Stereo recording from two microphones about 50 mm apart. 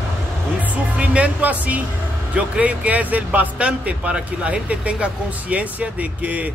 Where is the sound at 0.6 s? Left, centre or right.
Right.